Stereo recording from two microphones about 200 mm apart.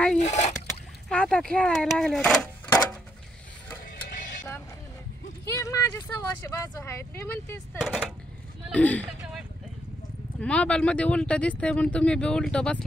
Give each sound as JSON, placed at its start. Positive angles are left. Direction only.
{"t": 0.2, "sound": "a child's voice", "side_deg": 35}
{"t": 0.7, "sound": "speech", "side_deg": 5}
{"t": 5.5, "sound": "speech", "side_deg": 15}
{"t": 7.8, "sound": "speech", "side_deg": -5}
{"t": 10.4, "sound": "speech", "side_deg": 5}